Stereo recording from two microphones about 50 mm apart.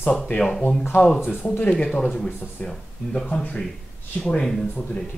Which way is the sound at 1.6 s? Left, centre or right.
Left.